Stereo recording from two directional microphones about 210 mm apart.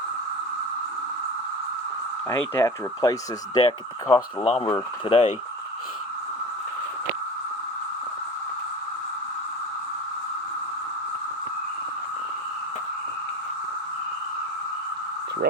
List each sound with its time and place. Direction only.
2.3 s speech: 15° left (ahead or behind)